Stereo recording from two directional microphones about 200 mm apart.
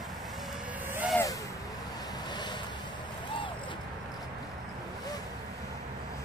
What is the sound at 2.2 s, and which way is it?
Vehicle, 20° left (ahead or behind).